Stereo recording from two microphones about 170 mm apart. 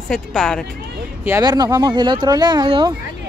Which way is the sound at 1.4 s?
25° right (ahead or behind).